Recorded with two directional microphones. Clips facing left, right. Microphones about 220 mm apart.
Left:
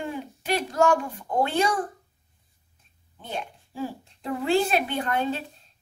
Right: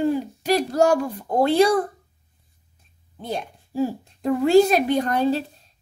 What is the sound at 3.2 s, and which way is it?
A woman's voice, 40° right (ahead or behind).